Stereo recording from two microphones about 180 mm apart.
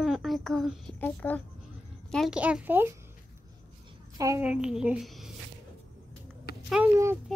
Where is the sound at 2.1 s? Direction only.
5° right (ahead or behind).